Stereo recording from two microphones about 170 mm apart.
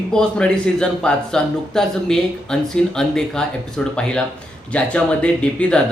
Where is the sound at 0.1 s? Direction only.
5° left (ahead or behind).